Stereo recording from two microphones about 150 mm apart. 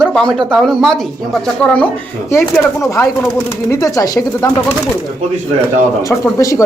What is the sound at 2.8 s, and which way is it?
Speech, 20° left (ahead or behind).